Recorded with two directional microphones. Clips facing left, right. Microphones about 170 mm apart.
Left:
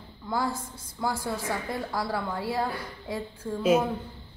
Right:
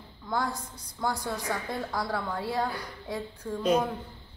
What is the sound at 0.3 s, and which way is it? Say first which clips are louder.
A woman's voice: left 2 dB; 5° left (ahead or behind).